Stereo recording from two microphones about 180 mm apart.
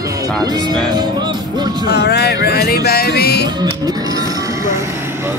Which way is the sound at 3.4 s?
20° right (ahead or behind).